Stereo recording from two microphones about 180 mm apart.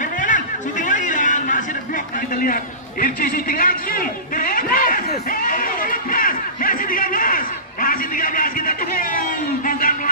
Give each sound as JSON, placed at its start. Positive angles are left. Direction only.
{"t": 0.0, "sound": "chatter", "side_deg": 45}
{"t": 2.1, "sound": "a man's voice", "side_deg": 50}
{"t": 5.3, "sound": "snicker", "side_deg": 50}
{"t": 9.7, "sound": "a sound", "side_deg": 50}